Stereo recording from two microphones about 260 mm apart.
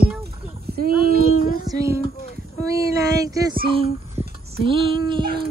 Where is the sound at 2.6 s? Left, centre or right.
Centre.